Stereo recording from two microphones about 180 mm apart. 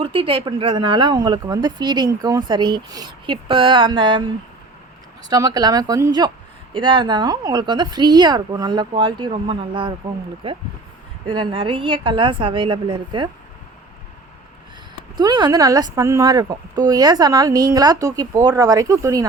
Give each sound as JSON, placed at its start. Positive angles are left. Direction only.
{"t": 0.0, "sound": "speech", "side_deg": -30}
{"t": 5.3, "sound": "speech", "side_deg": -20}
{"t": 15.2, "sound": "speech", "side_deg": -20}